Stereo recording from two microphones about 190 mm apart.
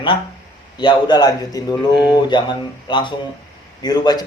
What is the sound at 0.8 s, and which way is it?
Speech, 25° left (ahead or behind).